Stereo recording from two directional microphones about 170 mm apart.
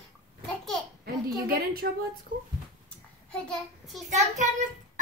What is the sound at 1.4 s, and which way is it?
Speech, 65° right (ahead or behind).